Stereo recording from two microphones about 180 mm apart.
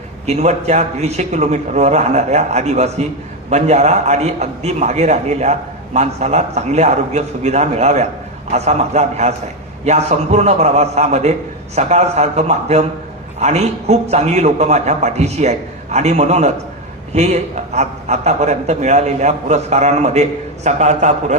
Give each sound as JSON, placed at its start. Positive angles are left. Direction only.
{"t": 0.3, "sound": "a man's voice", "side_deg": -40}